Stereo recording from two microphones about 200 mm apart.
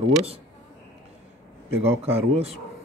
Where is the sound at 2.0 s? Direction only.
30° right (ahead or behind).